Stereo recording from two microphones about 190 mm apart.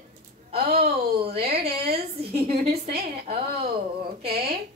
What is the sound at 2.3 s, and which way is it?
A woman's voice, 55° right (ahead or behind).